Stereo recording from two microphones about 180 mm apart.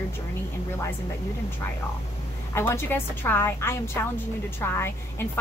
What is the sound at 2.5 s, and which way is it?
A woman's voice, 15° left (ahead or behind).